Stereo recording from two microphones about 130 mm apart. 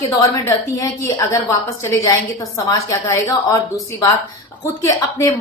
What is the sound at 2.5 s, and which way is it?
A woman's voice, 25° left (ahead or behind).